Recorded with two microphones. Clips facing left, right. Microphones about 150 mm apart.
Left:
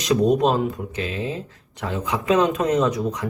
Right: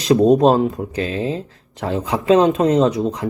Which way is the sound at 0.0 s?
30° right (ahead or behind).